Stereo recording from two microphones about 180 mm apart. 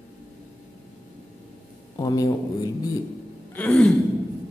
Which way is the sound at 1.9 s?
20° left (ahead or behind).